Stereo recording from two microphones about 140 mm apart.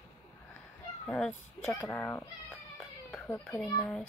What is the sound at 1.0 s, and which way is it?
A child's voice, 5° left (ahead or behind).